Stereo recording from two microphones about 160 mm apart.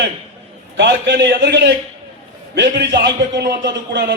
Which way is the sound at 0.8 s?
90° right.